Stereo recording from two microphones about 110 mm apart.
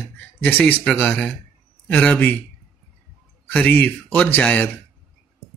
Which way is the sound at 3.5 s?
15° left (ahead or behind).